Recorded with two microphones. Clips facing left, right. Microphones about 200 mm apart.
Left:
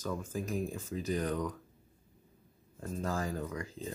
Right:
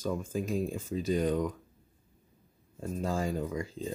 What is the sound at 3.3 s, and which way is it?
Speech, 15° right (ahead or behind).